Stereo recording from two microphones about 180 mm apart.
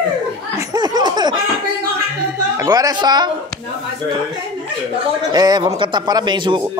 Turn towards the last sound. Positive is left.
turn(degrees=-25)  # may be behind; listen again after turning